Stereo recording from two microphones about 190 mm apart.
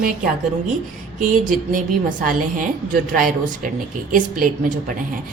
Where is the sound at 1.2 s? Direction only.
45° right (ahead or behind).